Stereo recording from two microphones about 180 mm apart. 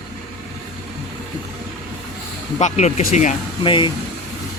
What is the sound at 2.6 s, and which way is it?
Speech, 40° left (ahead or behind).